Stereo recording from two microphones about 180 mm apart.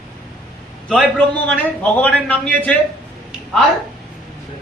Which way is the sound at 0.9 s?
5° left (ahead or behind).